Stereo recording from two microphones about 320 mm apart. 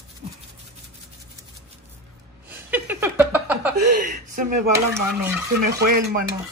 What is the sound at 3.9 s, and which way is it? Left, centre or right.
Speech, right.